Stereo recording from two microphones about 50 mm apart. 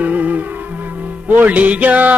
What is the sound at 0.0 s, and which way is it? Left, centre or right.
Music, right.